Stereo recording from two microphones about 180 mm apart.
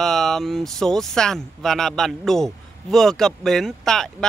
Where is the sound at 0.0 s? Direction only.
Centre (ahead or behind).